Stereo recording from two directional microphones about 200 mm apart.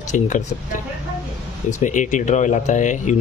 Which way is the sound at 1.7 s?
40° left (ahead or behind).